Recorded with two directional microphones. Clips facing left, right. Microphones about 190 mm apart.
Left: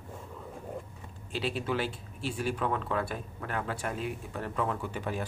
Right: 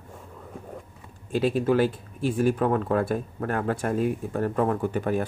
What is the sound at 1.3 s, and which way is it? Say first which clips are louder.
Speech: right 10 dB; 45° right (ahead or behind).